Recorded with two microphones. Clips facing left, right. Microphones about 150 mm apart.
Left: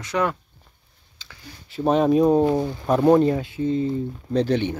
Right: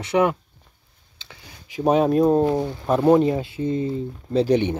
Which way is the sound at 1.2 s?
25° right (ahead or behind).